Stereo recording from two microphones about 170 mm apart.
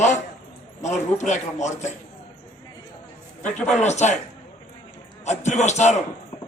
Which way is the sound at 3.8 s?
40° left (ahead or behind).